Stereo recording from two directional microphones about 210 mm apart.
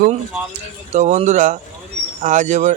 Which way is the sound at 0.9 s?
35° right (ahead or behind).